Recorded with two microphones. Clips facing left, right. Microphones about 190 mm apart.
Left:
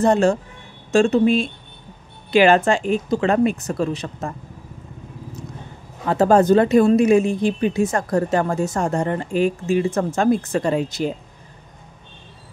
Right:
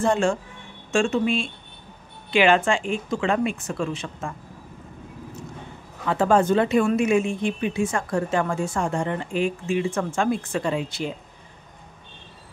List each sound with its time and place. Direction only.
0.0 s speech: 40° left (ahead or behind)
6.0 s speech: 40° left (ahead or behind)